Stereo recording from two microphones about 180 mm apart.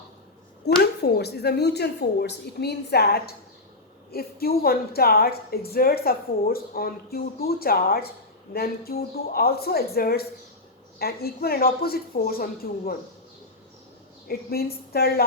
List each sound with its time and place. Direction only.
1.0 s a woman's voice: 65° left (ahead or behind)
14.3 s a woman's voice: 60° left (ahead or behind)